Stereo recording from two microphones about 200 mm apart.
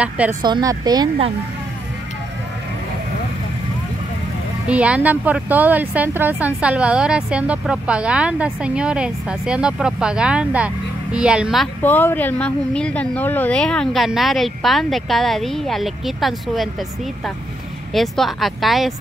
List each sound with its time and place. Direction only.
0.4 s speech: 20° right (ahead or behind)
4.6 s speech: 5° right (ahead or behind)
17.9 s speech: centre (ahead or behind)